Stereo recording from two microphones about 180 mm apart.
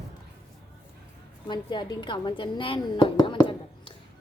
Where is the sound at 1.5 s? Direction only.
25° left (ahead or behind).